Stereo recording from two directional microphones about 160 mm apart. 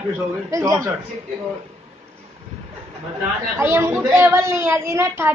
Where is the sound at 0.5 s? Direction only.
20° right (ahead or behind).